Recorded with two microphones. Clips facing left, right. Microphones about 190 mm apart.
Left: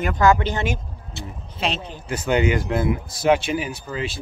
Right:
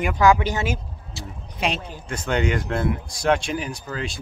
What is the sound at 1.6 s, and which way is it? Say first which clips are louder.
Speech: even; 15° right (ahead or behind).